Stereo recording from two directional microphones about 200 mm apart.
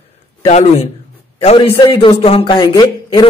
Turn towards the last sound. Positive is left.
turn(degrees=20)  # may be behind; listen again after turning